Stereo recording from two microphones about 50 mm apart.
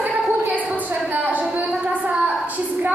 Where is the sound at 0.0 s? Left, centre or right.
Right.